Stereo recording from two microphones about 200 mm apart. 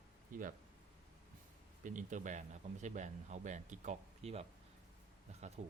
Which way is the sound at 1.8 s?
40° right (ahead or behind).